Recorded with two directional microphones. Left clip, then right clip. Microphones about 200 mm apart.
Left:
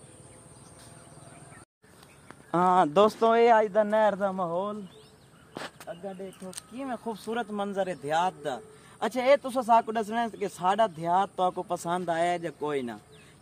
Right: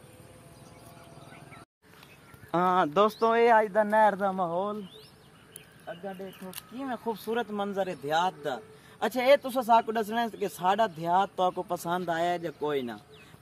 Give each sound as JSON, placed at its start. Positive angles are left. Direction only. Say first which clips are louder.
{"t": 2.5, "sound": "speech", "louder": "left 2 dB", "side_deg": 50}
{"t": 5.9, "sound": "speech", "louder": "even", "side_deg": 25}